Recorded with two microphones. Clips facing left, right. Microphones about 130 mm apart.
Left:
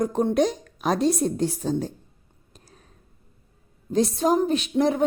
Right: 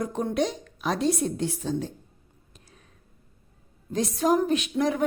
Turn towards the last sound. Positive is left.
turn(degrees=30)  # may be behind; listen again after turning